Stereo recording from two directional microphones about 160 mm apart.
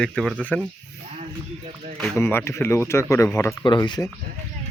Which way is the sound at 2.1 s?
15° left (ahead or behind).